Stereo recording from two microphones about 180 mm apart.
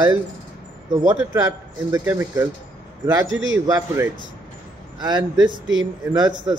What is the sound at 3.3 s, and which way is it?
Speech, 90° right.